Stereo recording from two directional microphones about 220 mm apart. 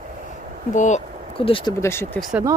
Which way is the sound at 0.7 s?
35° left (ahead or behind).